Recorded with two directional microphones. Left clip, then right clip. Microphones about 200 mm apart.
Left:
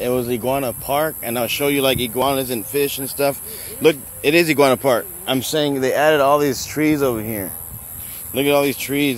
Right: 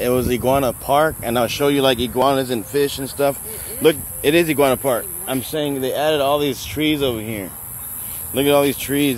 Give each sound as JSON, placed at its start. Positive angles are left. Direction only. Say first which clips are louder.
{"t": 0.0, "sound": "speech", "louder": "right 2 dB", "side_deg": 5}
{"t": 3.2, "sound": "speech", "louder": "right 1 dB", "side_deg": 15}
{"t": 4.5, "sound": "speech", "louder": "left 2 dB", "side_deg": 25}
{"t": 6.0, "sound": "speech", "louder": "left 3 dB", "side_deg": 20}